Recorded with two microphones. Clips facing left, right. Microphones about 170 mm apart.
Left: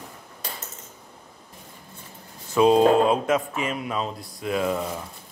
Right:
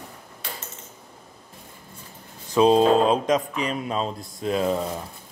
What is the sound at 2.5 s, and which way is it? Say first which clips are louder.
Speech: even; 25° right (ahead or behind).